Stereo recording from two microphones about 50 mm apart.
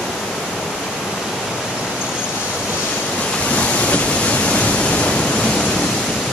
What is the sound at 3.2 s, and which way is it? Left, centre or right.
Waves, left.